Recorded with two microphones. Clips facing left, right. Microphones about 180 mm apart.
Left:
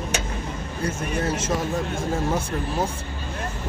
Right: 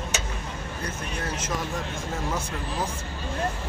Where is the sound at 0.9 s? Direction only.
25° left (ahead or behind).